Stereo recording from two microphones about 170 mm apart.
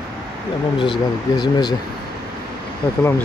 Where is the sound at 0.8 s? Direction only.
25° left (ahead or behind).